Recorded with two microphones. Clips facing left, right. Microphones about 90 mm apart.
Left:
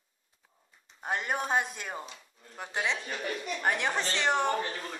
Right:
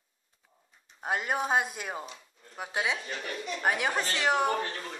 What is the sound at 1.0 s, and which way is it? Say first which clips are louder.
A woman's voice: right 2 dB; 5° right (ahead or behind).